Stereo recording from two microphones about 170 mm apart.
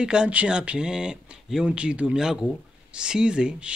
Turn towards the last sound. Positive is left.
turn(degrees=-5)  # may be behind; listen again after turning